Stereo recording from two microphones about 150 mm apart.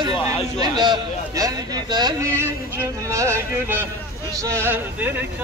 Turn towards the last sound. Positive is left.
turn(degrees=-10)  # may be behind; listen again after turning